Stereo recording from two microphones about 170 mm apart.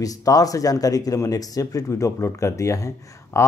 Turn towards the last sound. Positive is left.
turn(degrees=15)  # may be behind; listen again after turning